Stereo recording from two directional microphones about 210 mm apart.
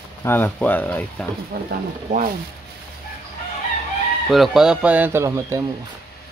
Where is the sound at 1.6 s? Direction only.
45° right (ahead or behind).